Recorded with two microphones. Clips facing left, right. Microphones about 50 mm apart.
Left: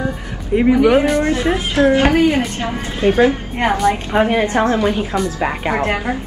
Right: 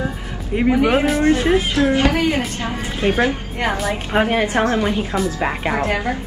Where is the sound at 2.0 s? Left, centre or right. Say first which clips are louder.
Left 4 dB; left.